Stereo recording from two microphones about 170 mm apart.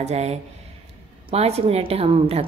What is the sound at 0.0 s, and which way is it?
A woman's voice, 40° right (ahead or behind).